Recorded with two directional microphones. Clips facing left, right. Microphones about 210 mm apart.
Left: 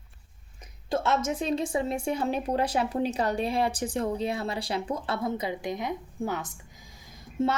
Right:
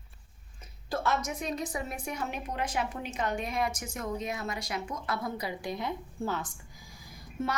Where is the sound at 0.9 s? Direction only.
25° left (ahead or behind).